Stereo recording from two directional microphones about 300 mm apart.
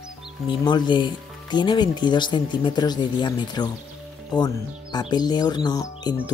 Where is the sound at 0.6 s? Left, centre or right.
Centre.